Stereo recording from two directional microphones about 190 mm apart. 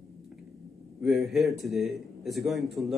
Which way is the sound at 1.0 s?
Centre (ahead or behind).